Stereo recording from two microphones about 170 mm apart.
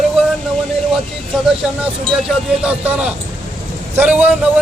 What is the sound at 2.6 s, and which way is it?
A man's voice, 10° right (ahead or behind).